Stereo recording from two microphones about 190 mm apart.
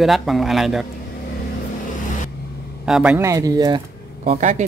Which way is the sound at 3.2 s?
15° right (ahead or behind).